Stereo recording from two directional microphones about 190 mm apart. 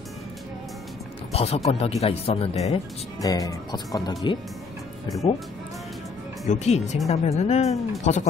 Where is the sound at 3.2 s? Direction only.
20° left (ahead or behind).